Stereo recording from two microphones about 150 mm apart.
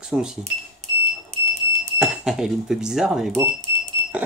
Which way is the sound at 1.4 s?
45° right (ahead or behind).